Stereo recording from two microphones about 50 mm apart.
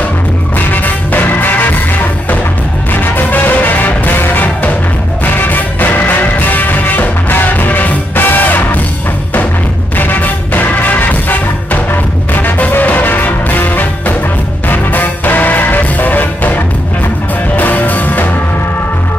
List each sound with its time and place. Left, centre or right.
0.7 s music: left
2.9 s music: left
9.9 s music: left